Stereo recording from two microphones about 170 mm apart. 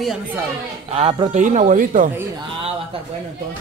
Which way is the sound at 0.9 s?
35° right (ahead or behind).